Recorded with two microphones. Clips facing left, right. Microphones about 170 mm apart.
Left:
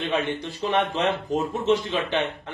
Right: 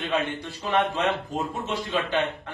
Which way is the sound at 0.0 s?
20° left (ahead or behind).